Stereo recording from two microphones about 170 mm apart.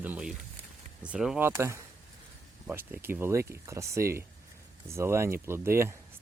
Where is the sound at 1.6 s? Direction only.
15° right (ahead or behind).